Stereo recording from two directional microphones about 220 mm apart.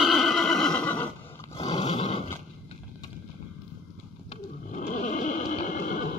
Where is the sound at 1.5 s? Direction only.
30° left (ahead or behind).